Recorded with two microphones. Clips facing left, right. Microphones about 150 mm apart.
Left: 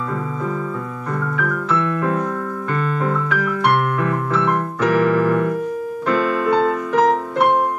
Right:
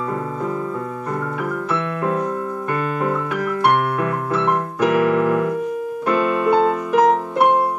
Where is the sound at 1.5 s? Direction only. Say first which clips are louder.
Left 2 dB; 10° right (ahead or behind).